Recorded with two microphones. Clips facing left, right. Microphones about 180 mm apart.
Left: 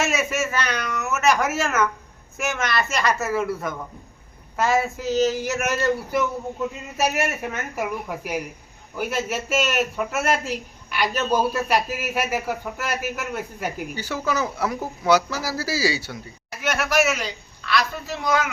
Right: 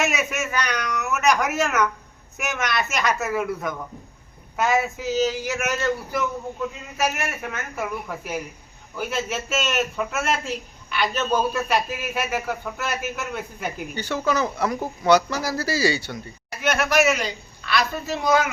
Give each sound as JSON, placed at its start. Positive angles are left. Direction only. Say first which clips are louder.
{"t": 0.0, "sound": "speech", "louder": "left 1 dB", "side_deg": 0}
{"t": 5.3, "sound": "speech", "louder": "left 2 dB", "side_deg": 40}
{"t": 7.2, "sound": "speech", "louder": "left 4 dB", "side_deg": 30}
{"t": 7.8, "sound": "a man's voice", "louder": "left 1 dB", "side_deg": 10}